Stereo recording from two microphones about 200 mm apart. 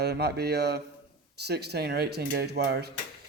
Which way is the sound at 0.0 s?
55° right (ahead or behind).